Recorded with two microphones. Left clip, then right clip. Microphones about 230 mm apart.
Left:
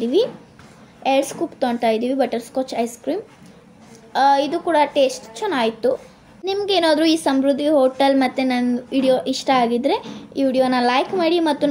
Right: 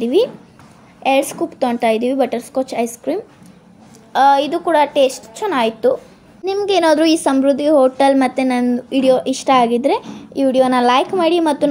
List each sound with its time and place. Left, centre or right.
0.0 s a woman's voice: centre